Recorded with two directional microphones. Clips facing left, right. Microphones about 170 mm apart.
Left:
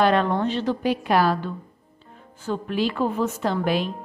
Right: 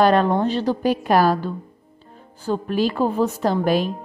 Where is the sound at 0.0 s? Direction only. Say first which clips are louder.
Right 3 dB; 40° right (ahead or behind).